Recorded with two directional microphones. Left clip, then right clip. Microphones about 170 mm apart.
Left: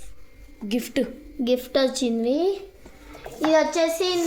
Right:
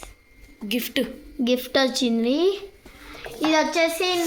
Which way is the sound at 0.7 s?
15° left (ahead or behind).